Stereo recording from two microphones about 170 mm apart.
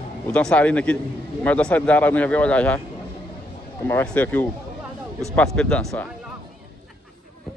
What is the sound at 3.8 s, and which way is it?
A man's voice, 15° left (ahead or behind).